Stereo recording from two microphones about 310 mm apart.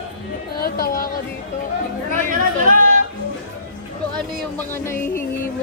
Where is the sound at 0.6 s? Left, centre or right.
Left.